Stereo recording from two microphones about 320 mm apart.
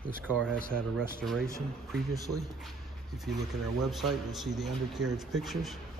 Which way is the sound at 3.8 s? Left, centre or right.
Centre.